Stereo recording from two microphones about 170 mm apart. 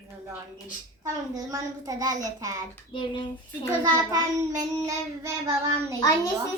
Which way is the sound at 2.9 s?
30° left (ahead or behind).